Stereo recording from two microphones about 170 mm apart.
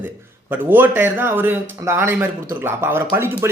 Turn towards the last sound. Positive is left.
turn(degrees=-15)  # may be behind; listen again after turning